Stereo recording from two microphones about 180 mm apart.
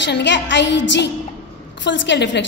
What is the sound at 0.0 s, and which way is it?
A woman's voice, 80° left.